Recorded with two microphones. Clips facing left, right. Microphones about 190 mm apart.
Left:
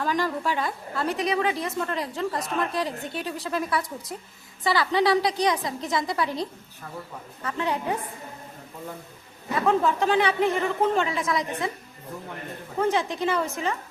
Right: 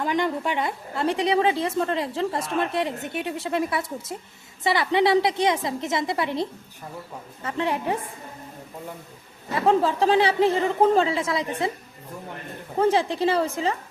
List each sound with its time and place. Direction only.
0.0 s a woman's voice: 20° right (ahead or behind)
9.6 s speech: 30° right (ahead or behind)
12.8 s speech: 30° right (ahead or behind)